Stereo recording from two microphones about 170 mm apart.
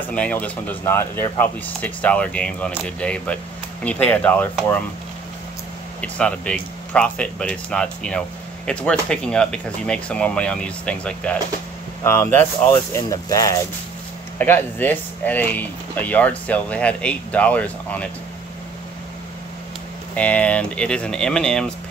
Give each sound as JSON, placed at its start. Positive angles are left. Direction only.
{"t": 0.1, "sound": "speech", "side_deg": 10}
{"t": 5.9, "sound": "speech", "side_deg": 5}
{"t": 20.2, "sound": "speech", "side_deg": 10}